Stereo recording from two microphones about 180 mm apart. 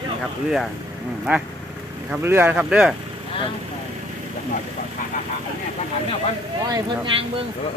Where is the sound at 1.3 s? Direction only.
10° right (ahead or behind).